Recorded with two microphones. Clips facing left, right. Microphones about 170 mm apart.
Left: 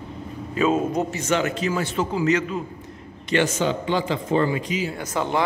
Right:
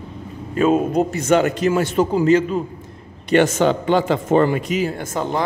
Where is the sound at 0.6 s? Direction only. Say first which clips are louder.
Right 5 dB; 50° right (ahead or behind); by 2.6 s 35° right (ahead or behind).